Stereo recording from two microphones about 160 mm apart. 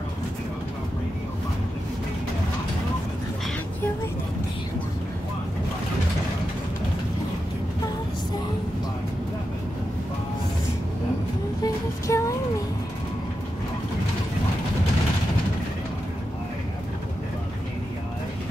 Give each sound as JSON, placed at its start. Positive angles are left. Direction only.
{"t": 11.6, "sound": "music", "side_deg": 20}